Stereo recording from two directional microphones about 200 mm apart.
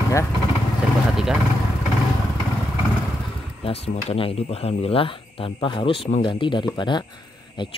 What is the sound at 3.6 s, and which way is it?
Speech, 30° left (ahead or behind).